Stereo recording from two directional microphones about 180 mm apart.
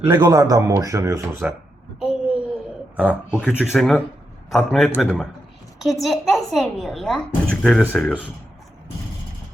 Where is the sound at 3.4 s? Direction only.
5° right (ahead or behind).